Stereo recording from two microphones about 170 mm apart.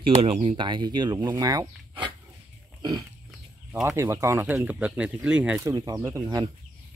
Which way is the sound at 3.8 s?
15° right (ahead or behind).